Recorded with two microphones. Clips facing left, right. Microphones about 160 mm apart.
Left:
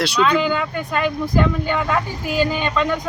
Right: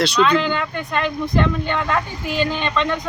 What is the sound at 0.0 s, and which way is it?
Speech, 5° left (ahead or behind).